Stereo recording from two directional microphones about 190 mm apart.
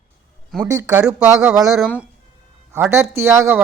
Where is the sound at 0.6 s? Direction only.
15° right (ahead or behind).